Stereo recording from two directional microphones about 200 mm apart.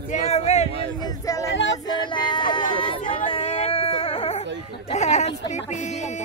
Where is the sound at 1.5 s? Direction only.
60° left (ahead or behind).